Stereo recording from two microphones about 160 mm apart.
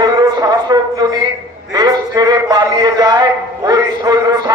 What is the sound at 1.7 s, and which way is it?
A man's voice, 25° right (ahead or behind).